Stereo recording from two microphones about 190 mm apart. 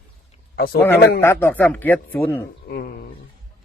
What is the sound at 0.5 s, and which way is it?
Speech, 55° left (ahead or behind).